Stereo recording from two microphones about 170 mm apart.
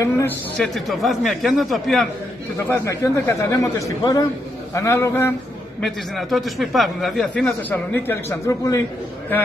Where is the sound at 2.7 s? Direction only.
15° left (ahead or behind).